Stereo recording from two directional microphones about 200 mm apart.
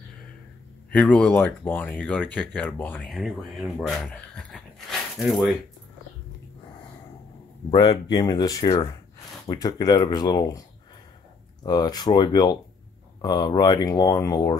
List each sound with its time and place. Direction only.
0.9 s speech: 5° left (ahead or behind)
7.7 s speech: 25° left (ahead or behind)
11.6 s speech: 20° left (ahead or behind)